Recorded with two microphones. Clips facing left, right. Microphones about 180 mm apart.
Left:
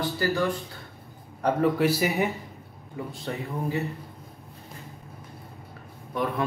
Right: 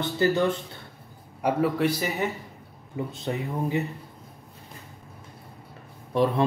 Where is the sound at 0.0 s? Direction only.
20° right (ahead or behind).